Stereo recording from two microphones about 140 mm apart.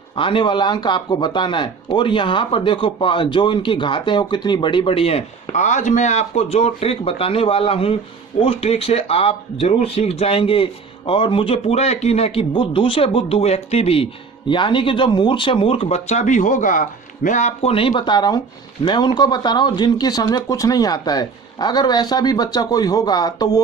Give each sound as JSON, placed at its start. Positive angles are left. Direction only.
{"t": 0.2, "sound": "speech", "side_deg": 35}
{"t": 5.5, "sound": "speech", "side_deg": 60}